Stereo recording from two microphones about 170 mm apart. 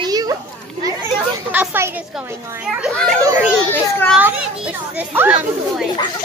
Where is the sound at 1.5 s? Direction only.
10° right (ahead or behind).